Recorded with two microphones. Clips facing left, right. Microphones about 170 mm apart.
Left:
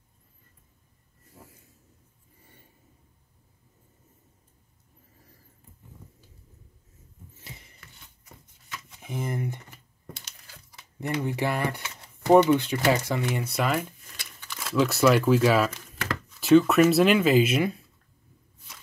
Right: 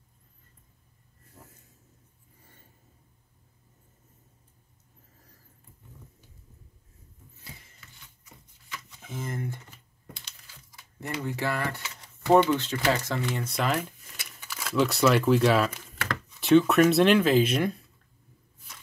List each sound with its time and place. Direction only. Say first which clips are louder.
9.0 s speech: left 4 dB; 15° left (ahead or behind)
11.0 s speech: left 4 dB; 15° left (ahead or behind)
13.4 s speech: left 1 dB; 5° left (ahead or behind)